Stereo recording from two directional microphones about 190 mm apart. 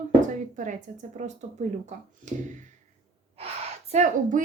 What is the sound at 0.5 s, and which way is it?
Speech, 40° right (ahead or behind).